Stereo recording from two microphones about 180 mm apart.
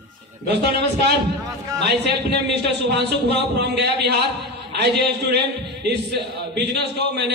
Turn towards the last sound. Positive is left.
turn(degrees=-70)  # may be behind; listen again after turning